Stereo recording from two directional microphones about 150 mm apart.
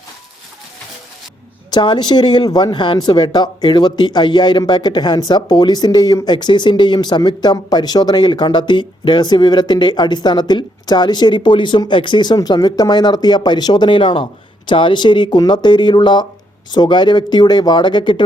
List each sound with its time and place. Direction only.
1.7 s a man's voice: 30° left (ahead or behind)